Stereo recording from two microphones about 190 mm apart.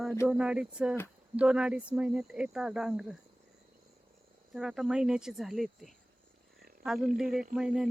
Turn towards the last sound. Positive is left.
turn(degrees=-5)  # may be behind; listen again after turning